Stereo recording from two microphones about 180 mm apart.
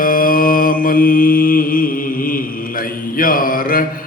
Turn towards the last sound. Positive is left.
turn(degrees=50)  # may be behind; listen again after turning